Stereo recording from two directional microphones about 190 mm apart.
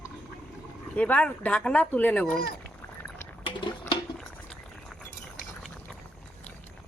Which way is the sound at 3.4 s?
25° left (ahead or behind).